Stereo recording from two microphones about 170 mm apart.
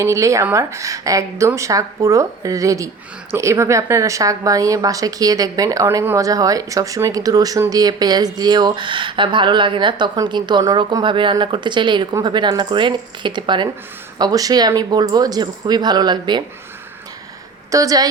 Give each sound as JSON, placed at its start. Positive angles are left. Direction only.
{"t": 0.0, "sound": "a woman's voice", "side_deg": -15}
{"t": 17.7, "sound": "a woman's voice", "side_deg": -20}